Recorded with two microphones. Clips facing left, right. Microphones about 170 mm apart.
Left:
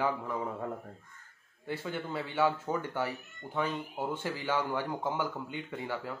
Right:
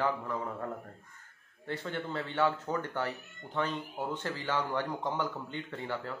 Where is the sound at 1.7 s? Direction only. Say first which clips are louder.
Even; 5° left (ahead or behind).